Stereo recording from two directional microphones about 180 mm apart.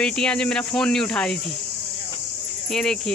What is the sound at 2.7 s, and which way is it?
Speech, 5° left (ahead or behind).